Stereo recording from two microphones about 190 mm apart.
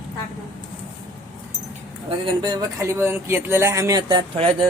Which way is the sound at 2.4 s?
20° right (ahead or behind).